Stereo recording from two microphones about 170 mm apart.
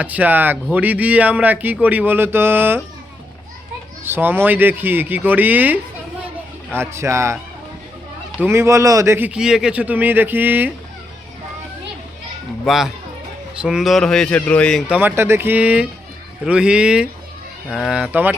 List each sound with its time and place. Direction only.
0.0 s speech: 10° right (ahead or behind)
4.0 s speech: 10° right (ahead or behind)
8.4 s speech: 15° right (ahead or behind)
12.6 s speech: centre (ahead or behind)